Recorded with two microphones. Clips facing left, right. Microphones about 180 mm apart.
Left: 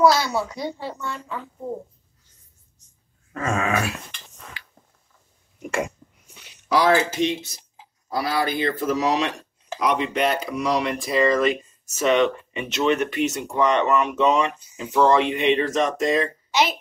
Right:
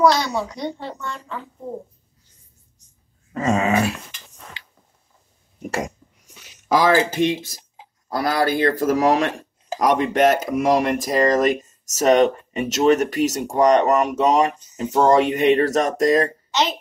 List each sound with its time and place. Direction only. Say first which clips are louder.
0.0 s a woman's voice: right 1 dB; 5° left (ahead or behind)
3.3 s dog: right 5 dB; 25° right (ahead or behind)
5.6 s a sound: even; 40° right (ahead or behind)
8.1 s speech: right 4 dB; 45° right (ahead or behind)
16.5 s a woman's voice: even; 10° left (ahead or behind)